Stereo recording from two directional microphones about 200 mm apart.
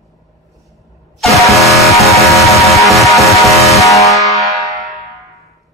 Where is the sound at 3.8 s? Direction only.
15° left (ahead or behind).